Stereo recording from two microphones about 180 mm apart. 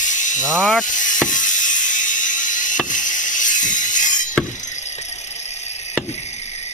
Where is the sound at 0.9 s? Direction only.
45° left (ahead or behind).